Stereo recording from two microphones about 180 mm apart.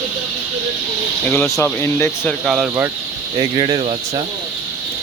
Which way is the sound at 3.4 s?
25° right (ahead or behind).